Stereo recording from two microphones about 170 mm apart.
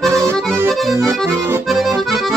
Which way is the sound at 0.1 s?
20° right (ahead or behind).